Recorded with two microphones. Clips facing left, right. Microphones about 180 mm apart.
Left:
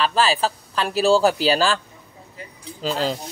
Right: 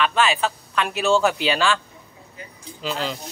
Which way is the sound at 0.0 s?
35° left (ahead or behind).